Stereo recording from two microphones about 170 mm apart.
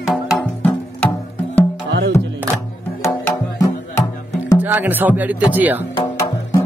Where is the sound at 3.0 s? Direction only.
15° left (ahead or behind).